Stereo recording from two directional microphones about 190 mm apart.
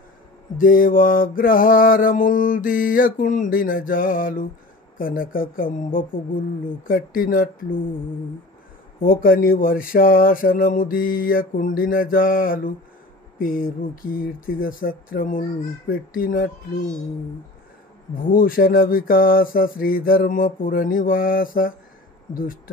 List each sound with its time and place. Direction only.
0.6 s mantra: 45° left (ahead or behind)
9.0 s mantra: 50° left (ahead or behind)
18.1 s mantra: 45° left (ahead or behind)